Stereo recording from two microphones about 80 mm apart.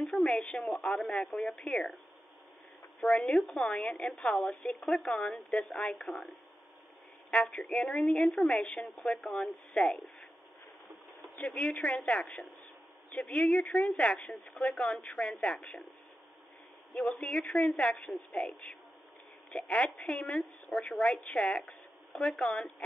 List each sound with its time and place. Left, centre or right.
0.2 s speech: centre
3.0 s speech: centre
4.8 s speech: centre
7.5 s speech: centre
11.3 s speech: centre
16.9 s speech: centre